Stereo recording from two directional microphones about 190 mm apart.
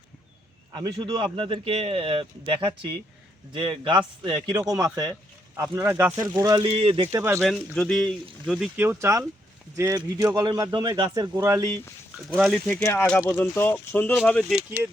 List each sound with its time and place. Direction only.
0.7 s speech: 20° right (ahead or behind)
7.1 s speech: 15° right (ahead or behind)
7.4 s speech: centre (ahead or behind); by 11.7 s 15° right (ahead or behind)
12.3 s speech: centre (ahead or behind)